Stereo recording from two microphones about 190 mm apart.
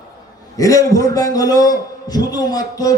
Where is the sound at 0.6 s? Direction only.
15° left (ahead or behind).